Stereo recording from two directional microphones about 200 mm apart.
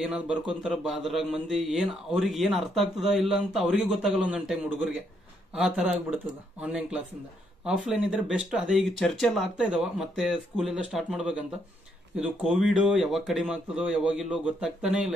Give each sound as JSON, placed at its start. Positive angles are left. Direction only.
{"t": 0.0, "sound": "mantra", "side_deg": 0}